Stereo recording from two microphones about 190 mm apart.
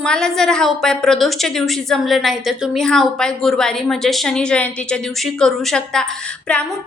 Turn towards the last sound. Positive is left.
turn(degrees=5)  # may be behind; listen again after turning